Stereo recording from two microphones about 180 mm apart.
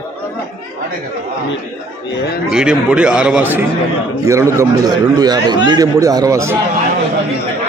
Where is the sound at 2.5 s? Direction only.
5° right (ahead or behind).